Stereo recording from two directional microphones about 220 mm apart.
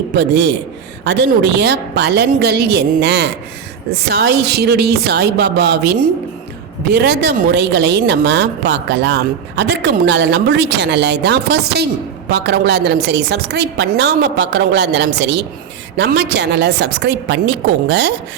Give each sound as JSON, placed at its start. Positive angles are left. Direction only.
{"t": 0.2, "sound": "speech", "side_deg": -50}